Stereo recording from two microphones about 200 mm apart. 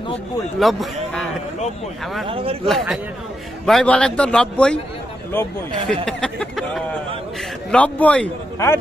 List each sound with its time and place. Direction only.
0.6 s a man's voice: centre (ahead or behind)
2.2 s speech: 25° right (ahead or behind)
2.6 s a man's voice: centre (ahead or behind)